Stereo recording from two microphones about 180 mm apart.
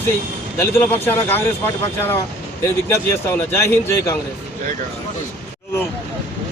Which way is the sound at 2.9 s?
15° left (ahead or behind).